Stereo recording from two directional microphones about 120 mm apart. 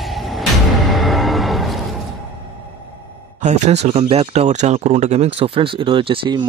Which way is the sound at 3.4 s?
70° right (ahead or behind).